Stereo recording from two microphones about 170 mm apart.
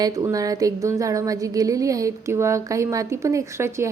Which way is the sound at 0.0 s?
20° right (ahead or behind).